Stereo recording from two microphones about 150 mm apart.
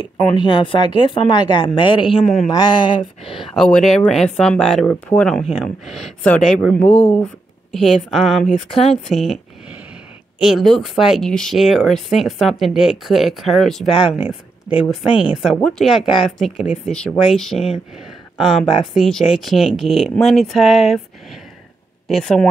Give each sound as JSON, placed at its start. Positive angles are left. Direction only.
{"t": 0.2, "sound": "speech", "side_deg": 30}
{"t": 3.5, "sound": "speech", "side_deg": 0}